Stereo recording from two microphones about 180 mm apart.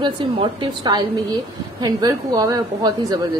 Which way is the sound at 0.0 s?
30° right (ahead or behind).